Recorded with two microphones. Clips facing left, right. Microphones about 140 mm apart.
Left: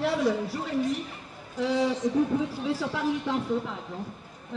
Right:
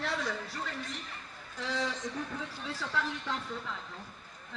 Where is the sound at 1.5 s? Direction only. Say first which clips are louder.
Left 10 dB; 10° left (ahead or behind).